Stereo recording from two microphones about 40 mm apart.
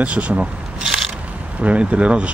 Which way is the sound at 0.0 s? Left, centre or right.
Right.